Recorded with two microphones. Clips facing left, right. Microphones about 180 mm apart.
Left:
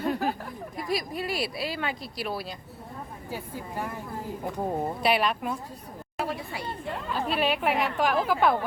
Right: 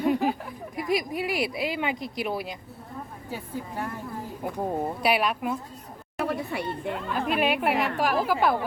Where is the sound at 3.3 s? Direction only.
10° left (ahead or behind).